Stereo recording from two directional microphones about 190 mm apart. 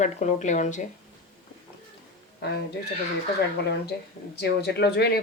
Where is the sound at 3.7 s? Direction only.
60° left (ahead or behind).